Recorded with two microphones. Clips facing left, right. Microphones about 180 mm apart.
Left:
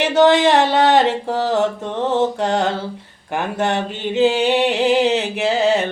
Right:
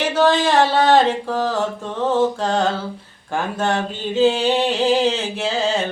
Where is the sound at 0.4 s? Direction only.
20° left (ahead or behind).